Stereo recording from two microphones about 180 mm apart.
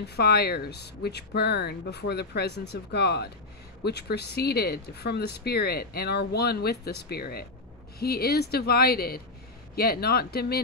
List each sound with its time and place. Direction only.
0.1 s speech: 65° left (ahead or behind)